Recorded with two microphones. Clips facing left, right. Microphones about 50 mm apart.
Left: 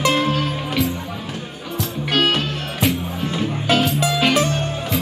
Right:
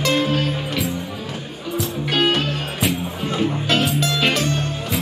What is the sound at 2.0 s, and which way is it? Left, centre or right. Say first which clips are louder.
Music: left 1 dB; centre.